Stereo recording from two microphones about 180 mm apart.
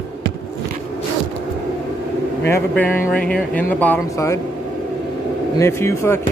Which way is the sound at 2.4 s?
10° left (ahead or behind).